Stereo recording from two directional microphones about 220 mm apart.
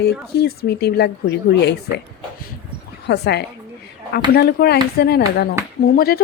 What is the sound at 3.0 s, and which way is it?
A woman's voice, 50° left (ahead or behind).